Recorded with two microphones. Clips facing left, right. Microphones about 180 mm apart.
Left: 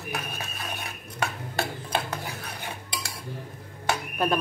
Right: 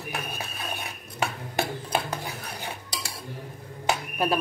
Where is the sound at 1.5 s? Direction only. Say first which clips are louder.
Right 2 dB; 15° right (ahead or behind).